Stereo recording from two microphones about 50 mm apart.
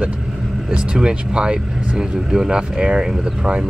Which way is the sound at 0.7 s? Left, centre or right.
Centre.